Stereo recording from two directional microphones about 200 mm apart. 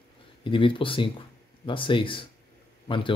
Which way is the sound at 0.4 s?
25° left (ahead or behind).